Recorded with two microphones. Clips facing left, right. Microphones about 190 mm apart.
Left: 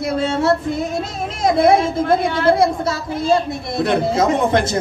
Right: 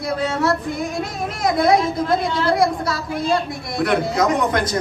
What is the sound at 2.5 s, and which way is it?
Speech, 25° left (ahead or behind).